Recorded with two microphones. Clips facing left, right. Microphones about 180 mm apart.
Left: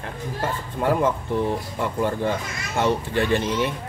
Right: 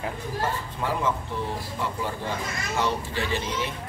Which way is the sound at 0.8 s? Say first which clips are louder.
Left 7 dB; 50° left (ahead or behind).